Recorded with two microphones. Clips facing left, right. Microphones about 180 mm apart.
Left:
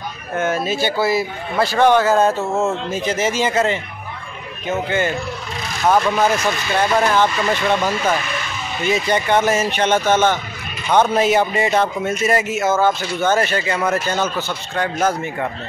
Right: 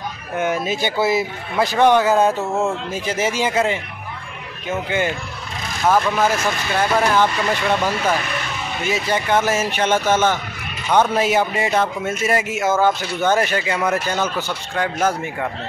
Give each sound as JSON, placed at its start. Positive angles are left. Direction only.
{"t": 0.4, "sound": "a man's voice", "side_deg": -15}
{"t": 8.8, "sound": "a man's voice", "side_deg": -5}